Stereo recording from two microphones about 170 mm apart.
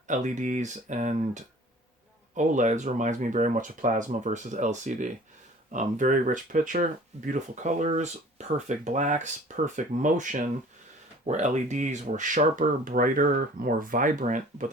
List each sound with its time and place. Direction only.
0.1 s speech: 45° right (ahead or behind)